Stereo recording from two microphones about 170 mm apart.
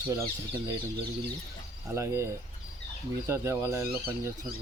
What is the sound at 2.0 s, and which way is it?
Speech, 15° right (ahead or behind).